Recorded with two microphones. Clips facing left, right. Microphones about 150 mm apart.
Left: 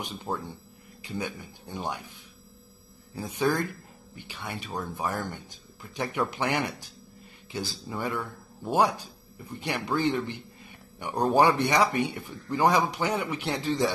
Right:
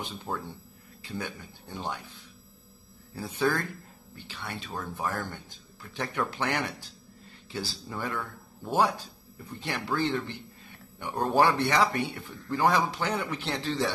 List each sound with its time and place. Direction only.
0.0 s speech: 15° left (ahead or behind)
3.2 s speech: 15° left (ahead or behind)